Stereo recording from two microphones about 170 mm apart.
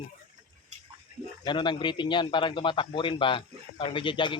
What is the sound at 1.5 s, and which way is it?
A man's voice, 30° left (ahead or behind).